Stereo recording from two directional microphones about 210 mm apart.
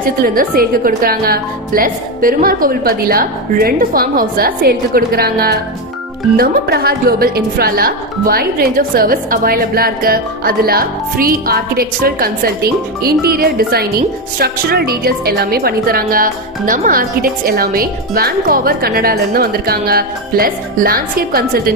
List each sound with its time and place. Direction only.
0.0 s a woman's voice: 45° right (ahead or behind)